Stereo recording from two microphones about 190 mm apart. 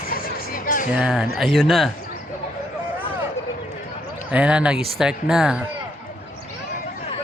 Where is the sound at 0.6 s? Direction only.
45° left (ahead or behind).